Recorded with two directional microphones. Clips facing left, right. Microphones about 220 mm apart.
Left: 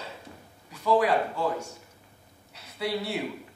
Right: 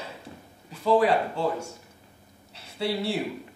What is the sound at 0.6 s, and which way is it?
Speech, 30° right (ahead or behind).